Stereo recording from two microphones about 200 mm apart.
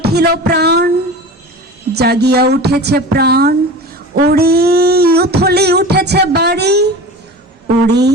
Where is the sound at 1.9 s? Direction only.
55° right (ahead or behind).